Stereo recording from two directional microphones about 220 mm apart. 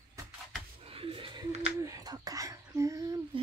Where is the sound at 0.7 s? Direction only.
25° right (ahead or behind).